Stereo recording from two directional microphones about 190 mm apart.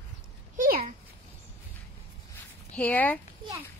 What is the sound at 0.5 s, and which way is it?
Speech, 45° right (ahead or behind).